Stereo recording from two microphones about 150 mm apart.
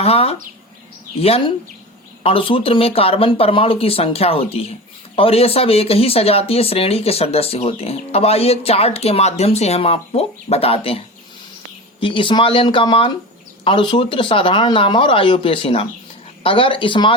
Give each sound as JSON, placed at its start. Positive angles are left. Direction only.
{"t": 0.0, "sound": "speech", "side_deg": 40}